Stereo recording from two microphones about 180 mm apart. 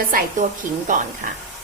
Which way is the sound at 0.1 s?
50° right (ahead or behind).